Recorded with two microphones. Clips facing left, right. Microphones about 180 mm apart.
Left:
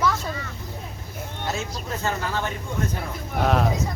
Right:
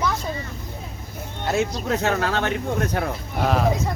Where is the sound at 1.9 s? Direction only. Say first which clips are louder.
Right 3 dB; 70° right (ahead or behind).